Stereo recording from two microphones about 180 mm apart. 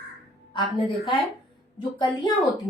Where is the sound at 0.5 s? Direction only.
25° left (ahead or behind).